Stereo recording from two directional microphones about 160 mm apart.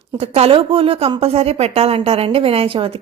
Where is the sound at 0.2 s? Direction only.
40° right (ahead or behind).